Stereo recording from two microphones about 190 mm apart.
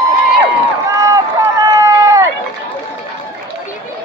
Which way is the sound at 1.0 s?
15° right (ahead or behind).